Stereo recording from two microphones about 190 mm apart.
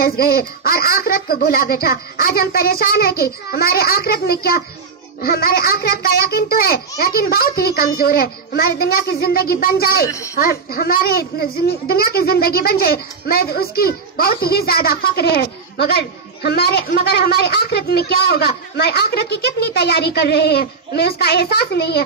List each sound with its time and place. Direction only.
0.0 s a child's voice: 50° left (ahead or behind)
10.0 s speech: 15° left (ahead or behind)
10.4 s a child's voice: 50° left (ahead or behind)